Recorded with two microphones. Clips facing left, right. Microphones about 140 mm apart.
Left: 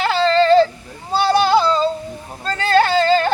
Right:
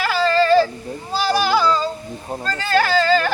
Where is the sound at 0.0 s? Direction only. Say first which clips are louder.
Left 2 dB; 25° left (ahead or behind).